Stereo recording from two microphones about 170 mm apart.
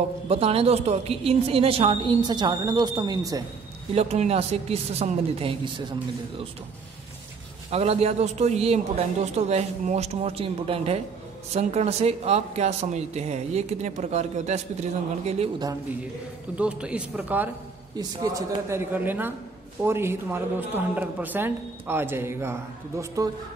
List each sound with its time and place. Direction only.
0.3 s speech: 35° right (ahead or behind)
3.9 s speech: 40° right (ahead or behind)
7.7 s speech: 35° right (ahead or behind)
16.5 s speech: 5° right (ahead or behind)
17.9 s speech: 20° right (ahead or behind)